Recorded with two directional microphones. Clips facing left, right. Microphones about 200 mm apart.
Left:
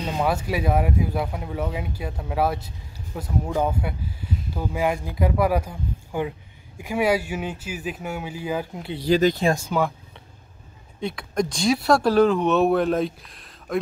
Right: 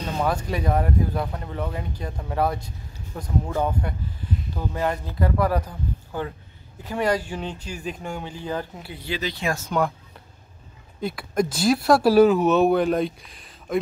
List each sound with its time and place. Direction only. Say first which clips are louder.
0.0 s speech: left 1 dB; 10° left (ahead or behind)
8.9 s speech: left 11 dB; 40° left (ahead or behind)
9.6 s speech: even; 5° left (ahead or behind)